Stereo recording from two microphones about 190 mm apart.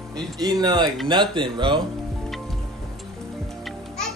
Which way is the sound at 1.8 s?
Centre (ahead or behind).